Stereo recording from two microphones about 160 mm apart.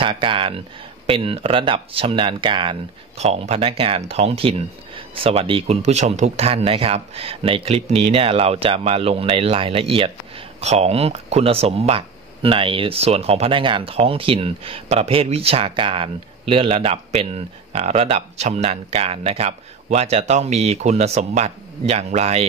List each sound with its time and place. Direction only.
0.0 s speech: 30° right (ahead or behind)